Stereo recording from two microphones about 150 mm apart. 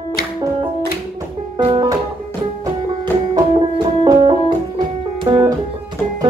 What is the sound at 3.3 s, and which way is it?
Music, 30° right (ahead or behind).